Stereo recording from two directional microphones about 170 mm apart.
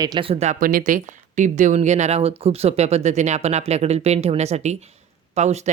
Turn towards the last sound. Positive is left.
turn(degrees=-40)  # may be behind; listen again after turning